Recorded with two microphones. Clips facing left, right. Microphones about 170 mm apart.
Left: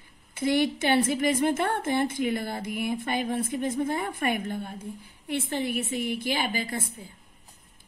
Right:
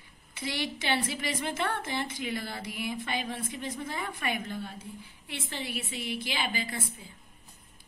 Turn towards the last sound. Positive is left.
turn(degrees=45)  # may be behind; listen again after turning